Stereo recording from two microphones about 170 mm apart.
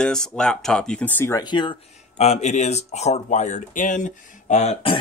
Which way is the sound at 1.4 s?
30° left (ahead or behind).